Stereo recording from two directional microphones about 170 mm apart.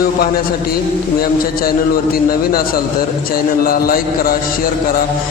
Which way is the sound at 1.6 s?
60° left (ahead or behind).